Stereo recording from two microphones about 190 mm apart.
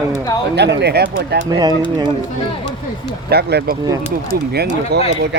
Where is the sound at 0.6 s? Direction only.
60° right (ahead or behind).